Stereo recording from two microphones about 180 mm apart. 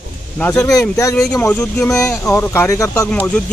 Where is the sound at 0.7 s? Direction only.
20° left (ahead or behind).